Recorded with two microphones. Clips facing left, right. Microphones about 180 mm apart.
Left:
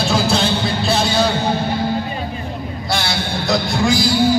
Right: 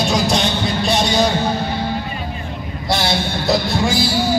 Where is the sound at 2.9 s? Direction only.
25° right (ahead or behind).